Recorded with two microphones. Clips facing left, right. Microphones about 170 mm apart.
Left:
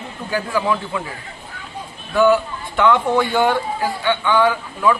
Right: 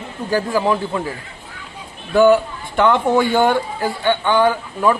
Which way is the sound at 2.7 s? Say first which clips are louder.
Right 1 dB; 50° right (ahead or behind).